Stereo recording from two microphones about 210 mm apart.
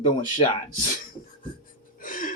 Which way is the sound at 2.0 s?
40° left (ahead or behind).